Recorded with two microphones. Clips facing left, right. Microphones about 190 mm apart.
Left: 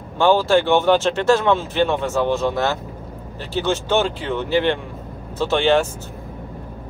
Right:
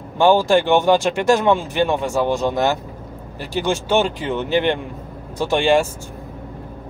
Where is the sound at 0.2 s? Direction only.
15° right (ahead or behind).